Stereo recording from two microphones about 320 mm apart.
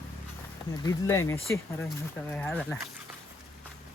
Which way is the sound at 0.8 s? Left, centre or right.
Centre.